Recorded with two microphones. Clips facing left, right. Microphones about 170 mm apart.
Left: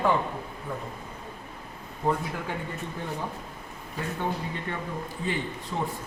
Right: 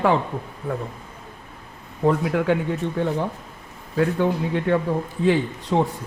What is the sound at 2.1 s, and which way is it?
Speech, 80° right.